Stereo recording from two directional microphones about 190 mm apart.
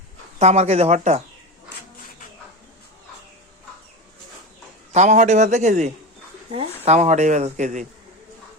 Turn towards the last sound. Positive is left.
turn(degrees=-40)  # may be behind; listen again after turning